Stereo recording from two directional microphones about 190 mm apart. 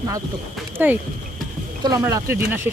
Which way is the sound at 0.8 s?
10° right (ahead or behind).